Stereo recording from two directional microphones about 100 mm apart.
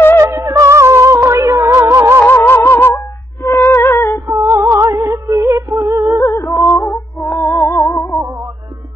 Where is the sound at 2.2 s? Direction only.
20° left (ahead or behind).